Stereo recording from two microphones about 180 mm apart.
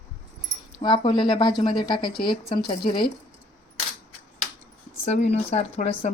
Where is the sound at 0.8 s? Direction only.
25° left (ahead or behind).